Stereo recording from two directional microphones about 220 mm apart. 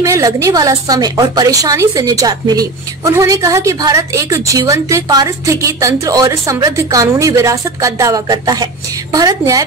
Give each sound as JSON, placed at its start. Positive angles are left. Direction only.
{"t": 0.0, "sound": "a woman's voice", "side_deg": -15}